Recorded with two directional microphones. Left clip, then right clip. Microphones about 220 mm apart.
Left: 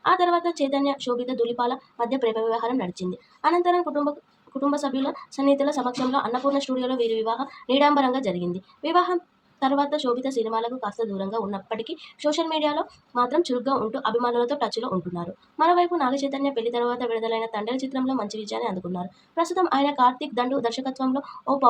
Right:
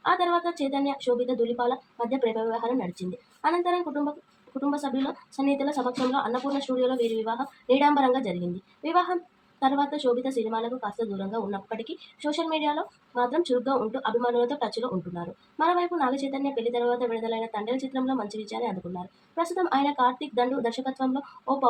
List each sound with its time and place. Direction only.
0.0 s speech: 30° left (ahead or behind)